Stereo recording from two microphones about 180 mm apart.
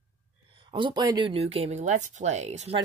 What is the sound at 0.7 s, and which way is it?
Speech, 25° right (ahead or behind).